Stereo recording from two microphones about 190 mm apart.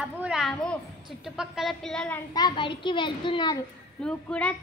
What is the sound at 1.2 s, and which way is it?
A woman's voice, 5° right (ahead or behind).